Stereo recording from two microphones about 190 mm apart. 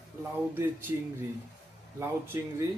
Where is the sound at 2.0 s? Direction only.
15° right (ahead or behind).